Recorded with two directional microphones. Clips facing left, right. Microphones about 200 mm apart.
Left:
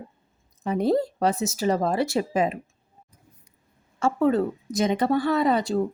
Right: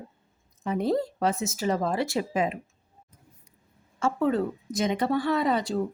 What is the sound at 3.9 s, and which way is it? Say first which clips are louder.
Speech: left 3 dB; 40° left (ahead or behind).